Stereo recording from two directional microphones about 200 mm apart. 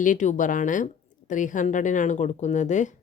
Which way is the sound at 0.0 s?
40° left (ahead or behind).